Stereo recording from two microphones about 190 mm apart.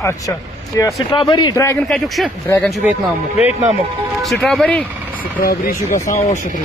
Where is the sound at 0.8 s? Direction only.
15° left (ahead or behind).